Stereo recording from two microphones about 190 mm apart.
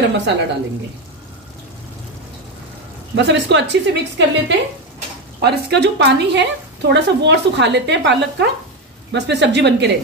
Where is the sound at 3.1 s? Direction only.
65° right (ahead or behind).